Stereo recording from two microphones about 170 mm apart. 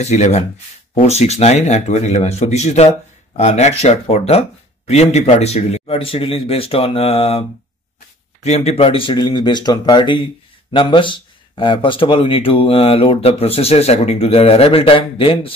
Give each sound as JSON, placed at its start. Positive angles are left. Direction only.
{"t": 0.0, "sound": "speech", "side_deg": 40}
{"t": 8.5, "sound": "speech", "side_deg": 35}